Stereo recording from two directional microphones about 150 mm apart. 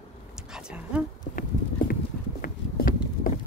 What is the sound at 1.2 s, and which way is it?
Clip-clop, 70° left (ahead or behind).